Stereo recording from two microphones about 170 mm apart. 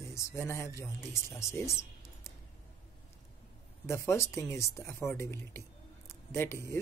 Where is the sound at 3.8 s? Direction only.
15° left (ahead or behind).